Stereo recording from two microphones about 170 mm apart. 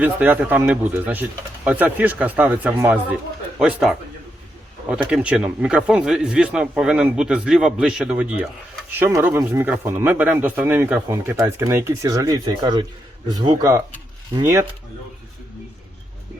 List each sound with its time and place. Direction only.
0.0 s speech: 10° right (ahead or behind)
5.0 s speech: 5° right (ahead or behind)